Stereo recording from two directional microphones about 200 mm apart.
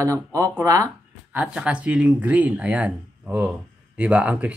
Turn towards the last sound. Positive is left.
turn(degrees=-5)  # may be behind; listen again after turning